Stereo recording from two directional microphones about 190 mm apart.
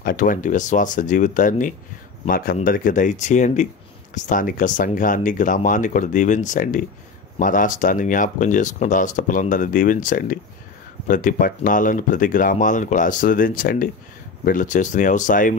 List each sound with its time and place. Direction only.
0.0 s speech: 45° left (ahead or behind)